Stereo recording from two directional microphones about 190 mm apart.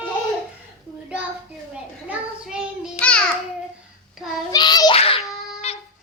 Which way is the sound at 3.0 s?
5° left (ahead or behind).